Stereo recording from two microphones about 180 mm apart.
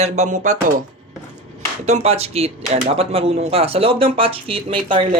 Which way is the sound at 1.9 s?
35° right (ahead or behind).